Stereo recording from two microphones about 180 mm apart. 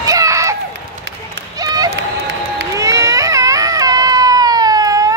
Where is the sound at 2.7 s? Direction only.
20° right (ahead or behind).